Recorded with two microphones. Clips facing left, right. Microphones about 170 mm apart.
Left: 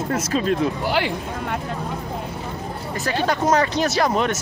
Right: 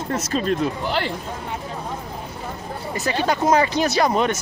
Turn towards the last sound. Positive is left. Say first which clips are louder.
# right 1 dB
turn(degrees=0)  # may be behind; listen again after turning